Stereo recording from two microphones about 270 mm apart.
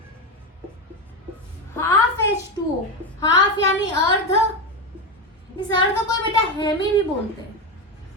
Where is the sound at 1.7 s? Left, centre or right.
Centre.